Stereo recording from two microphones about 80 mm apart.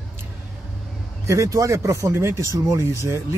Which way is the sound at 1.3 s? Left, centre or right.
Right.